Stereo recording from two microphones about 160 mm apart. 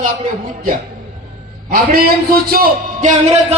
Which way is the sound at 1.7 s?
70° right (ahead or behind).